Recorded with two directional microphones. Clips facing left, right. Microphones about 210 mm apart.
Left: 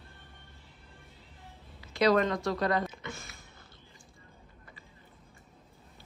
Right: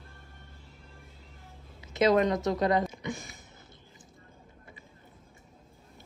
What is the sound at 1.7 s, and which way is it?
Speech, 20° right (ahead or behind).